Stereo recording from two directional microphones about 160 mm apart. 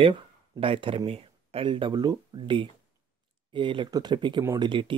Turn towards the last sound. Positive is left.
turn(degrees=-30)  # may be behind; listen again after turning